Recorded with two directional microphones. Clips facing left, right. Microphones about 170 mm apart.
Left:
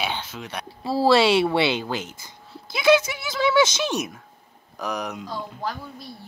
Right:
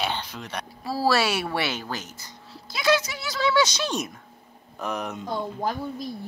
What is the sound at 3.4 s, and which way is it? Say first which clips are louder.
Speech: left 3 dB; 20° left (ahead or behind).